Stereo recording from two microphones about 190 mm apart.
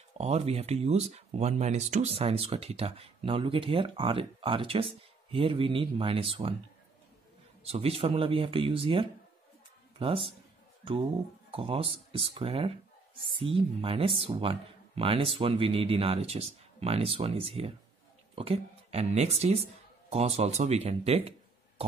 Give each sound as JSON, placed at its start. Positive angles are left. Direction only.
{"t": 0.2, "sound": "speech", "side_deg": -35}
{"t": 7.6, "sound": "speech", "side_deg": -30}
{"t": 11.5, "sound": "speech", "side_deg": -30}